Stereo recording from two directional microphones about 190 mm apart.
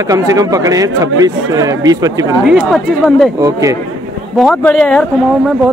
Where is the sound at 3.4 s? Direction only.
15° right (ahead or behind).